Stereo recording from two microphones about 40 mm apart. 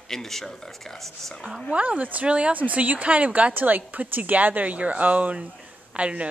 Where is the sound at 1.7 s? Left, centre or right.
Right.